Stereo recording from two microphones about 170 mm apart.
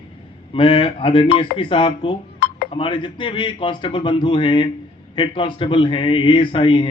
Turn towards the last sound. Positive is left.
turn(degrees=30)  # may be behind; listen again after turning